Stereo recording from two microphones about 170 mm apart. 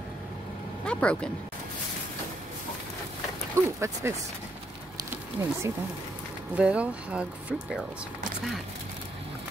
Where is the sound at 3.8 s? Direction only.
15° right (ahead or behind).